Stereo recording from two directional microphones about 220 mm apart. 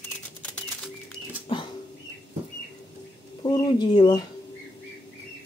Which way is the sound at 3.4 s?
20° left (ahead or behind).